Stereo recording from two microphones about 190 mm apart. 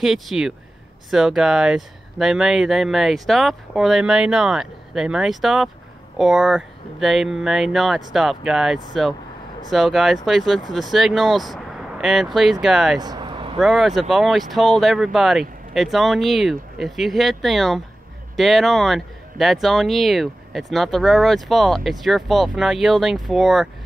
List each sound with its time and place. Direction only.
0.0 s speech: centre (ahead or behind)
13.0 s vehicle: 25° right (ahead or behind)
13.6 s speech: centre (ahead or behind)